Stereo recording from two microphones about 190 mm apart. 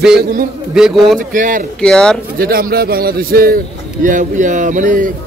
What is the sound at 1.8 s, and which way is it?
Speech, 5° left (ahead or behind).